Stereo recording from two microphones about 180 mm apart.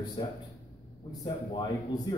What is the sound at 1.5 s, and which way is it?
Speech, 20° left (ahead or behind).